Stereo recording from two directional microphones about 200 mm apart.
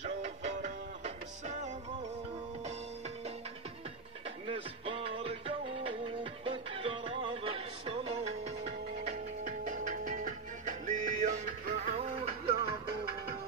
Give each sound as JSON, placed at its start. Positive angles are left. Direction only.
{"t": 0.0, "sound": "music", "side_deg": -35}
{"t": 4.5, "sound": "music", "side_deg": -25}